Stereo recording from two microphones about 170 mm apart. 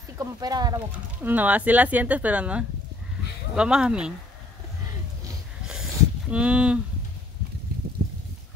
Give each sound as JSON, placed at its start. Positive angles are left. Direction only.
{"t": 0.2, "sound": "speech", "side_deg": -25}
{"t": 0.7, "sound": "speech", "side_deg": -10}
{"t": 6.3, "sound": "speech", "side_deg": -5}